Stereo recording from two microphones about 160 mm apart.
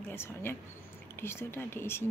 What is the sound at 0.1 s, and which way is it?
A woman's voice, 15° left (ahead or behind).